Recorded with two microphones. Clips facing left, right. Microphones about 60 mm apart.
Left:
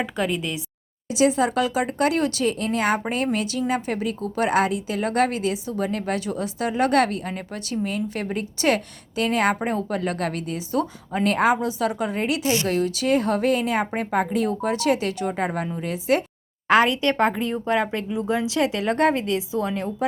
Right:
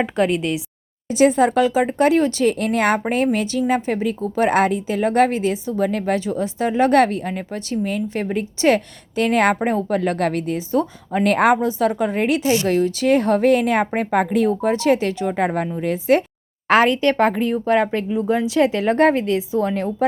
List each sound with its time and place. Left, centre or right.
0.0 s speech: centre
1.1 s speech: right
2.4 s speech: right
3.3 s speech: right
11.2 s speech: right
11.6 s speech: right
12.4 s speech: right
15.4 s speech: right
17.5 s speech: centre
18.1 s speech: right